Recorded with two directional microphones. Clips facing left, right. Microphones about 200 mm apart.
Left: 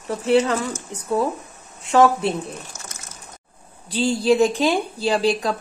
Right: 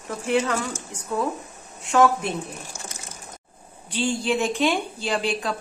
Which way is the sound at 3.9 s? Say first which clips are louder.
Left 6 dB; 35° left (ahead or behind).